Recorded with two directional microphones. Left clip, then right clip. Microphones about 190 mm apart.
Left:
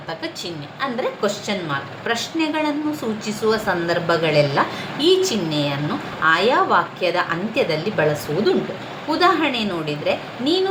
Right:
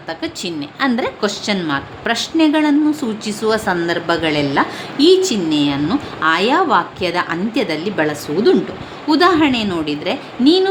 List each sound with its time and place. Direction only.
0.2 s a woman's voice: 60° right (ahead or behind)
9.0 s a woman's voice: 50° right (ahead or behind)